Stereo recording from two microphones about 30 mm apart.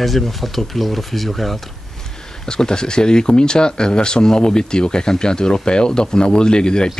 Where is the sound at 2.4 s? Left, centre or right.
Left.